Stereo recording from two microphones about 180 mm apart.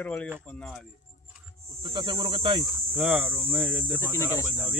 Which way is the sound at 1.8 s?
25° right (ahead or behind).